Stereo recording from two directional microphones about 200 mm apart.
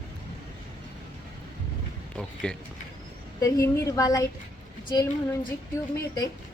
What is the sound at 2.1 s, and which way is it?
Speech, 5° left (ahead or behind).